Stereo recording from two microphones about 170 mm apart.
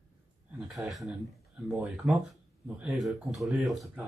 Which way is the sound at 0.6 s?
Centre (ahead or behind).